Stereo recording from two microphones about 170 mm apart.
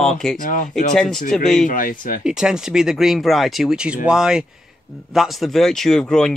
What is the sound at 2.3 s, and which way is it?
Speech, 5° right (ahead or behind).